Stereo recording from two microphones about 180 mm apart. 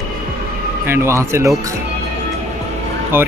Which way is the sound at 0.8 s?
15° right (ahead or behind).